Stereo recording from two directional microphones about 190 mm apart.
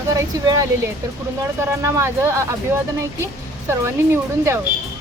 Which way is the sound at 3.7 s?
15° right (ahead or behind).